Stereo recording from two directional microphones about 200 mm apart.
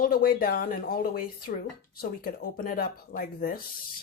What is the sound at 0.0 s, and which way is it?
Speech, 45° left (ahead or behind).